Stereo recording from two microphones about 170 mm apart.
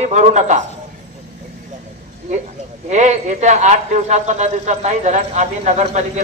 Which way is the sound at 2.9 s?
45° right (ahead or behind).